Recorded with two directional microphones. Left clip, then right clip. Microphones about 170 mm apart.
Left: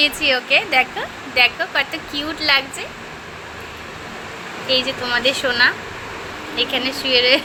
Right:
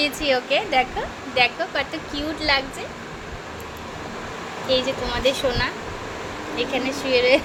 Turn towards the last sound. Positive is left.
turn(degrees=-5)  # may be behind; listen again after turning